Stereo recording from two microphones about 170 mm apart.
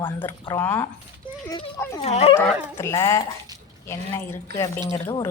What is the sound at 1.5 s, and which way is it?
Speech, 25° left (ahead or behind).